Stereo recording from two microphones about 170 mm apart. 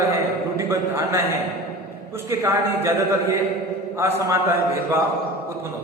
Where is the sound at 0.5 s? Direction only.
15° right (ahead or behind).